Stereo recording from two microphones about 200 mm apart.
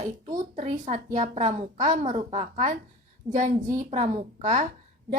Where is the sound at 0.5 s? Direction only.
35° right (ahead or behind).